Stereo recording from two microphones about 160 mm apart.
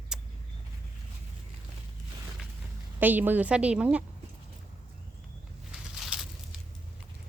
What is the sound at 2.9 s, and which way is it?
A woman's voice, 10° right (ahead or behind).